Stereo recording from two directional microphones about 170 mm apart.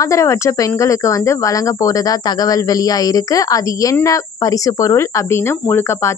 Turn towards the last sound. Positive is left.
turn(degrees=15)  # may be behind; listen again after turning